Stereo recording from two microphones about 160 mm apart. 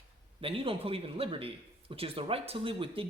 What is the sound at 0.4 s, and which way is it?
Speech, 35° right (ahead or behind).